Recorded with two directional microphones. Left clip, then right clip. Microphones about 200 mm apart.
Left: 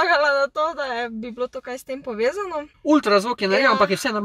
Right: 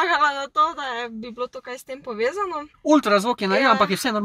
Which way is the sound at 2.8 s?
20° right (ahead or behind).